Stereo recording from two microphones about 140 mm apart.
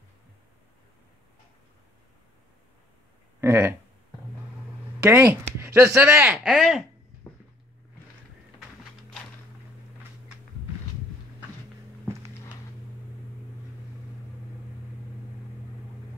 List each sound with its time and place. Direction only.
3.3 s speech: 15° right (ahead or behind)
5.0 s speech: 10° right (ahead or behind)